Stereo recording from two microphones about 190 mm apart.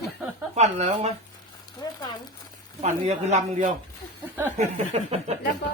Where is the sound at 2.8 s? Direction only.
35° right (ahead or behind).